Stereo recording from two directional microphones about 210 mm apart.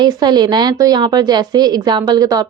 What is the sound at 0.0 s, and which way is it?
A woman's voice, 20° right (ahead or behind).